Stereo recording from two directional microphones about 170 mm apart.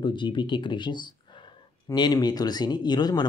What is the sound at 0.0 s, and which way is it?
Speech, 25° left (ahead or behind).